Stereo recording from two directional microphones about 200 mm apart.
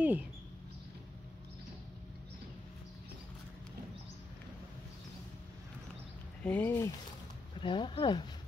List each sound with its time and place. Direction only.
0.0 s mouse: 10° right (ahead or behind)
6.4 s speech: 10° left (ahead or behind)
7.6 s speech: 25° left (ahead or behind)